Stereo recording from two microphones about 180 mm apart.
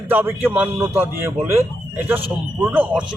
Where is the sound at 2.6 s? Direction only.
10° right (ahead or behind).